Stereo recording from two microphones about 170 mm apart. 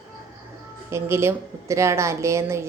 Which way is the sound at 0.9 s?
15° right (ahead or behind).